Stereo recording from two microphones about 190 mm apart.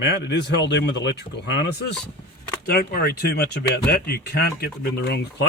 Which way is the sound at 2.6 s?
55° left (ahead or behind).